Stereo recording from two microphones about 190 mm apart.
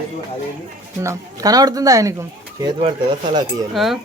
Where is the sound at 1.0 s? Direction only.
20° right (ahead or behind).